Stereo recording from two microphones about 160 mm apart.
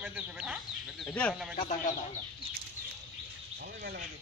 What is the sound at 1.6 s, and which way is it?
Speech, 50° left (ahead or behind).